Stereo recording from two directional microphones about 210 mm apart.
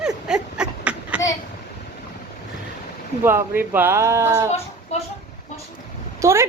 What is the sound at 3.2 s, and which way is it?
A woman's voice, 10° right (ahead or behind).